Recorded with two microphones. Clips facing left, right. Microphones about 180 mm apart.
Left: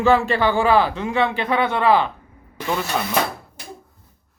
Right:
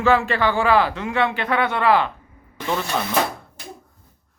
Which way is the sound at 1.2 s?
25° left (ahead or behind).